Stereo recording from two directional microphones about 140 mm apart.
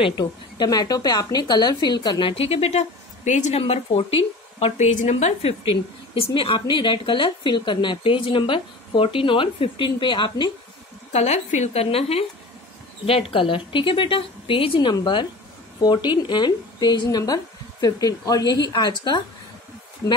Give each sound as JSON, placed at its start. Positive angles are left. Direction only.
{"t": 0.0, "sound": "speech", "side_deg": 30}
{"t": 3.3, "sound": "a woman's voice", "side_deg": 55}
{"t": 11.1, "sound": "a woman's voice", "side_deg": 50}